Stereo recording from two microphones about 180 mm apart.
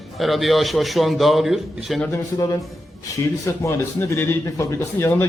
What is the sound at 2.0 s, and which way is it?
A man's voice, 15° left (ahead or behind).